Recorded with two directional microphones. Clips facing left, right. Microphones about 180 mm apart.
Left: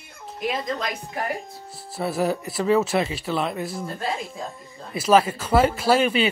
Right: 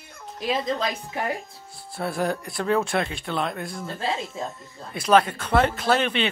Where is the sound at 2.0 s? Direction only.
5° left (ahead or behind).